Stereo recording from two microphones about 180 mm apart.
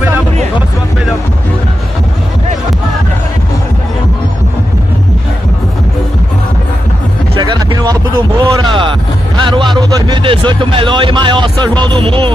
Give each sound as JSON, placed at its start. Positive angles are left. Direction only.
{"t": 7.3, "sound": "a sound", "side_deg": -25}
{"t": 9.8, "sound": "music", "side_deg": -20}
{"t": 11.8, "sound": "speech", "side_deg": -25}